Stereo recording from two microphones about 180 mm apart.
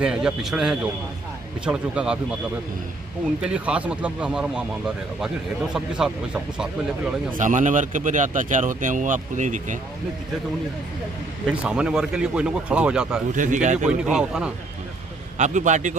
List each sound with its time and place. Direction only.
0.0 s speech: 5° right (ahead or behind)
3.4 s speech: 5° right (ahead or behind)
7.3 s speech: 45° right (ahead or behind)
11.4 s speech: 5° right (ahead or behind)
13.3 s speech: 45° right (ahead or behind)
13.8 s speech: 5° right (ahead or behind)
15.3 s speech: 40° right (ahead or behind)